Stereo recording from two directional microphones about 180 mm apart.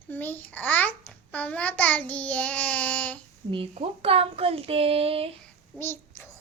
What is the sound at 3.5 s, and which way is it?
A woman's voice, 30° right (ahead or behind).